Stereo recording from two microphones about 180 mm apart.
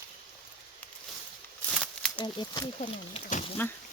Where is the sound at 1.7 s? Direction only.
5° left (ahead or behind).